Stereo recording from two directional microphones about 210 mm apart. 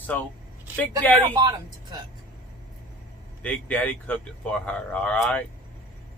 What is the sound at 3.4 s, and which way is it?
Speech, 5° left (ahead or behind).